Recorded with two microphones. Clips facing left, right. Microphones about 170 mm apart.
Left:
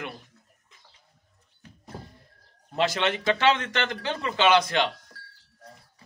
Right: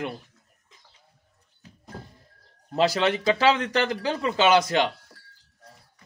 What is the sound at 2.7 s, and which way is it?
A man's voice, 35° right (ahead or behind).